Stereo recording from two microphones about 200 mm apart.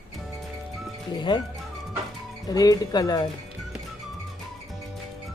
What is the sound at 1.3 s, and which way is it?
Speech, 20° left (ahead or behind).